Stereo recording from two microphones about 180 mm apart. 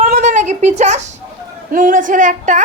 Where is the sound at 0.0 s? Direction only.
45° right (ahead or behind).